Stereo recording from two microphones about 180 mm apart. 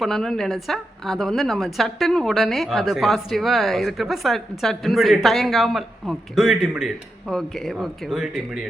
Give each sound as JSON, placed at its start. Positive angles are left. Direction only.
{"t": 0.0, "sound": "a woman's voice", "side_deg": 0}